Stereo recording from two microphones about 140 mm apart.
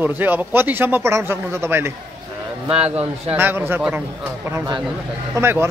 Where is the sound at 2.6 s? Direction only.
45° right (ahead or behind).